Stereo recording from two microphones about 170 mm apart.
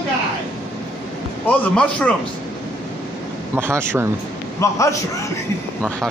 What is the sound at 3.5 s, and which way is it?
Speech, 15° right (ahead or behind).